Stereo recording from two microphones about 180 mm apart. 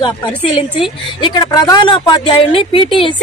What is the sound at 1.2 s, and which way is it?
Speech, 25° left (ahead or behind).